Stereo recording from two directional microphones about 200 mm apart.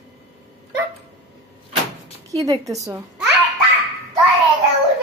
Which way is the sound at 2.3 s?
15° right (ahead or behind).